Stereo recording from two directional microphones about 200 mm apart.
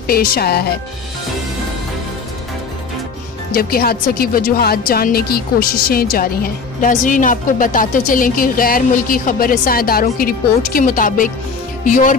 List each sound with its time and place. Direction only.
0.0 s a woman's voice: 50° left (ahead or behind)
3.5 s a woman's voice: 50° left (ahead or behind)